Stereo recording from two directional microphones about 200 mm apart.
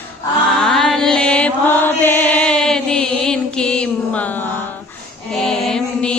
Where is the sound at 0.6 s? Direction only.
Centre (ahead or behind).